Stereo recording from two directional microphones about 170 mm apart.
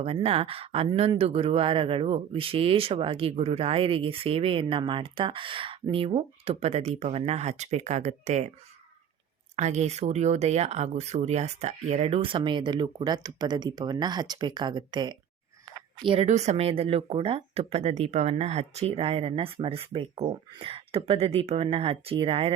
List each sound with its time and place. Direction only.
0.0 s speech: 35° right (ahead or behind)
9.6 s speech: 40° right (ahead or behind); by 15.2 s 25° right (ahead or behind)
16.0 s speech: 40° right (ahead or behind)